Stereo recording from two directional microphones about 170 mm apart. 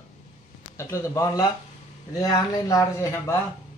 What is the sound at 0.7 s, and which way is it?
Speech, 20° left (ahead or behind).